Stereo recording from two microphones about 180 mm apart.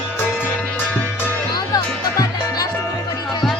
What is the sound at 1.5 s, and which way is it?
Music, 20° left (ahead or behind).